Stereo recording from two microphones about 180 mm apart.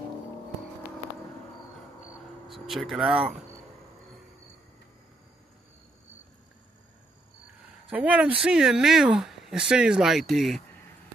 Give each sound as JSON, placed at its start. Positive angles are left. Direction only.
{"t": 2.4, "sound": "speech", "side_deg": 0}
{"t": 7.9, "sound": "speech", "side_deg": -5}